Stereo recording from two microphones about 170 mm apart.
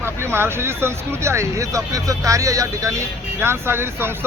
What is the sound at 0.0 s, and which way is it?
Speech, 15° right (ahead or behind).